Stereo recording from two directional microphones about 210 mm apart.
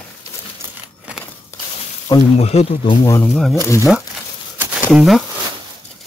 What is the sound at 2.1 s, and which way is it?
Speech, 30° left (ahead or behind).